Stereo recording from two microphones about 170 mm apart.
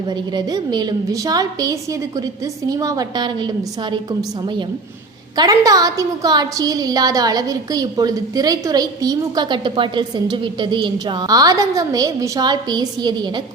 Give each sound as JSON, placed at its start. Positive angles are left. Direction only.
{"t": 0.1, "sound": "a woman's voice", "side_deg": -25}